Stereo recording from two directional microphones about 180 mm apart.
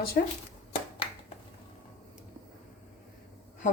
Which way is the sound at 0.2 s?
55° left (ahead or behind).